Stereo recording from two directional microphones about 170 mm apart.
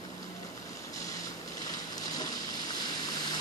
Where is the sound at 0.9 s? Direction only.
20° left (ahead or behind).